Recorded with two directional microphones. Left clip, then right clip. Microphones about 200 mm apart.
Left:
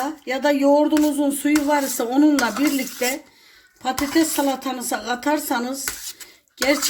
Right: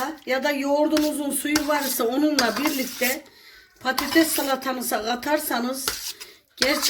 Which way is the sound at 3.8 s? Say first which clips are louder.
Even; 50° left (ahead or behind).